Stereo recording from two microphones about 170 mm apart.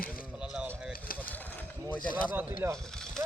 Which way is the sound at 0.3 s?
5° right (ahead or behind).